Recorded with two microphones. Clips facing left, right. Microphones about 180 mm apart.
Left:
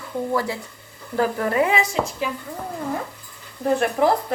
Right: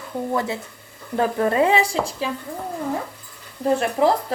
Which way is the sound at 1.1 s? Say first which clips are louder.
Right 1 dB; 25° right (ahead or behind).